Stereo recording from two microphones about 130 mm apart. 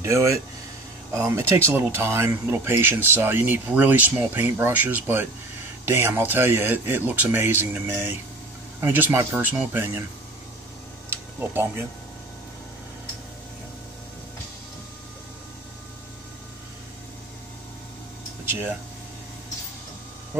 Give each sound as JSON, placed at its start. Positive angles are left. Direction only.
{"t": 0.0, "sound": "speech", "side_deg": -25}
{"t": 11.1, "sound": "a sound", "side_deg": -15}
{"t": 18.4, "sound": "speech", "side_deg": -15}